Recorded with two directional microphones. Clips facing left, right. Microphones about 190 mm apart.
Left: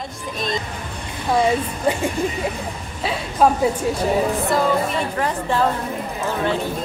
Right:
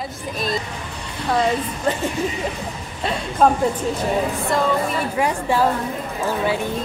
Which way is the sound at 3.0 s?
5° left (ahead or behind).